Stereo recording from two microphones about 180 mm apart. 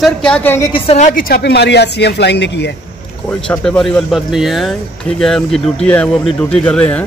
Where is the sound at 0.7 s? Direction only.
35° left (ahead or behind).